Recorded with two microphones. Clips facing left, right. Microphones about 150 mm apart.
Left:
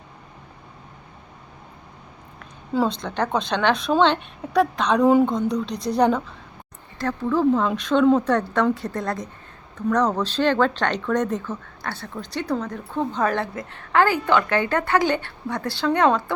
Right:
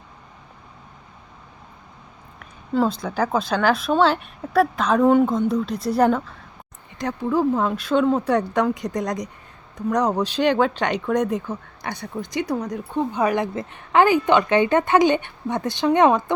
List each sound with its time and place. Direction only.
2.7 s a woman's voice: 5° right (ahead or behind)
7.0 s a woman's voice: 15° right (ahead or behind)